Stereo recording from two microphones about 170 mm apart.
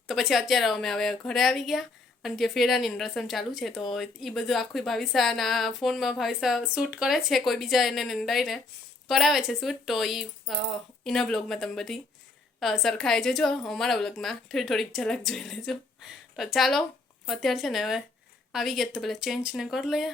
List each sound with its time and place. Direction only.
0.1 s a woman's voice: centre (ahead or behind)